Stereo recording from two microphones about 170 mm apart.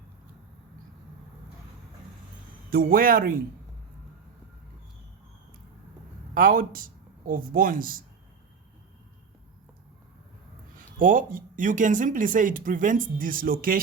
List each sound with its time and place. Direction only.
2.6 s speech: 60° right (ahead or behind)
6.3 s speech: 55° right (ahead or behind)
10.8 s speech: 50° right (ahead or behind)